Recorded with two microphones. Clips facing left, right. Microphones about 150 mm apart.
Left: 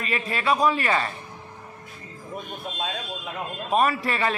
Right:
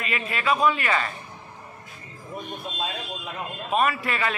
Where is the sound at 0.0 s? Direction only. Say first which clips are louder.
Left 1 dB; 35° left (ahead or behind).